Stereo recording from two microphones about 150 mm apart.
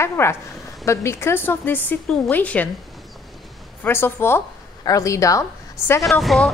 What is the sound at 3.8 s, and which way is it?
Speech, 15° left (ahead or behind).